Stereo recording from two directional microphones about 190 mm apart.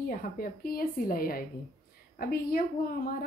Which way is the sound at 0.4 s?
50° left (ahead or behind).